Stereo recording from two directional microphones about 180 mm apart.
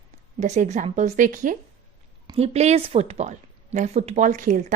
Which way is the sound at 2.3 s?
35° right (ahead or behind).